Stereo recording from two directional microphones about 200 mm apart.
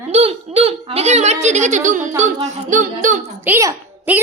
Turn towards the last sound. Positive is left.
turn(degrees=-10)  # may be behind; listen again after turning